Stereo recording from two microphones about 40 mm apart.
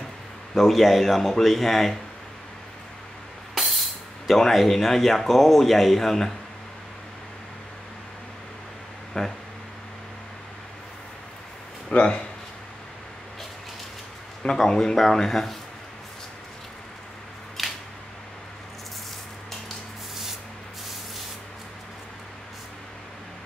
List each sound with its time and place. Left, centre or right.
0.6 s speech: centre
3.5 s vehicle: centre
4.3 s speech: centre
9.1 s a man's voice: centre
11.9 s speech: left
14.4 s a man's voice: centre
17.6 s a sound: centre